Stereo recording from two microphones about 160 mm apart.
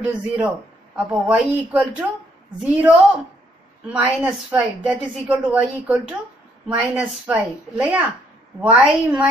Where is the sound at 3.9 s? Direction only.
10° right (ahead or behind).